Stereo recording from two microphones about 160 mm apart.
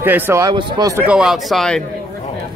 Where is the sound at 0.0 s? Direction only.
10° right (ahead or behind).